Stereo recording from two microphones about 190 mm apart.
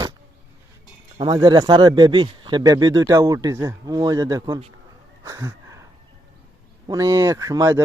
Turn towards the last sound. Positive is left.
turn(degrees=-15)  # may be behind; listen again after turning